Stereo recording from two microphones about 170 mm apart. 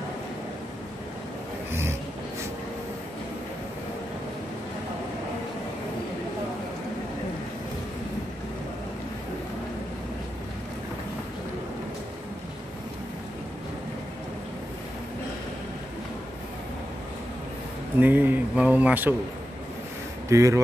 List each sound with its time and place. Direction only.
1.7 s a sound: 15° right (ahead or behind)
18.0 s speech: 10° right (ahead or behind)
20.2 s speech: 15° right (ahead or behind)